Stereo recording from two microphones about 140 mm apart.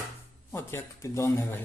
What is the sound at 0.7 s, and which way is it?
Speech, 20° left (ahead or behind).